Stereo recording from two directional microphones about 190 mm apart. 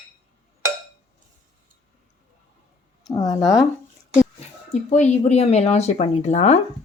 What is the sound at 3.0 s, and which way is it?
Speech, 20° left (ahead or behind).